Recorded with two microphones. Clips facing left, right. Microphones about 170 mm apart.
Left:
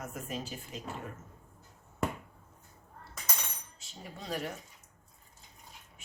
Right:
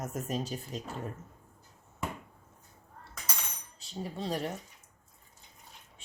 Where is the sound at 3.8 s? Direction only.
30° right (ahead or behind).